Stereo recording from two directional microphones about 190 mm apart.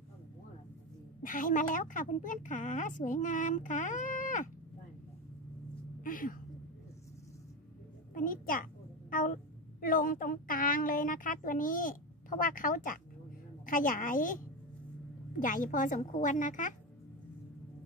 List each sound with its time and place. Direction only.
1.2 s a woman's voice: 45° left (ahead or behind)
6.0 s a sound: 45° left (ahead or behind)
8.1 s a child's voice: 45° left (ahead or behind)